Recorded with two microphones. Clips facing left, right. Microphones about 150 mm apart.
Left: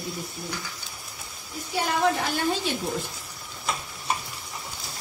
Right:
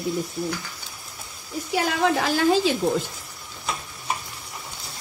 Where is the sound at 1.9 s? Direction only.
90° right.